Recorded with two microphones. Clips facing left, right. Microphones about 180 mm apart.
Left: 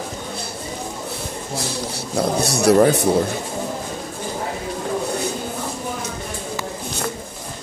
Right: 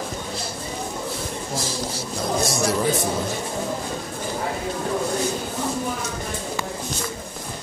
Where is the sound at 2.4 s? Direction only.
65° left (ahead or behind).